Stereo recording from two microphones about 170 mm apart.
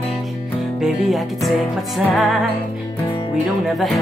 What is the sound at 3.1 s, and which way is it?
Music, 30° left (ahead or behind).